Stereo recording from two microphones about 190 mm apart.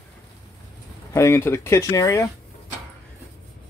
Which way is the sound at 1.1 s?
15° left (ahead or behind).